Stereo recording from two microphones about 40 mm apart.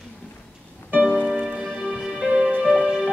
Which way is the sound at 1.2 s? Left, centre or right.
Centre.